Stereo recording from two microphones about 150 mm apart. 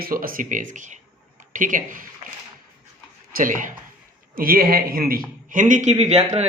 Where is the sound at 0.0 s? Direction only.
70° right (ahead or behind).